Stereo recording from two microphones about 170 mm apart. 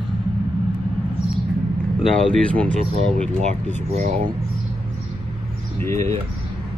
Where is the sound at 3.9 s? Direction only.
40° right (ahead or behind).